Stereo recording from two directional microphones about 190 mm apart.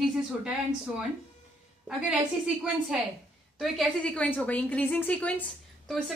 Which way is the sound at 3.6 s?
Centre (ahead or behind).